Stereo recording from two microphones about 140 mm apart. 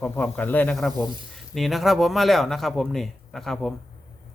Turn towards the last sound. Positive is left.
turn(degrees=5)  # may be behind; listen again after turning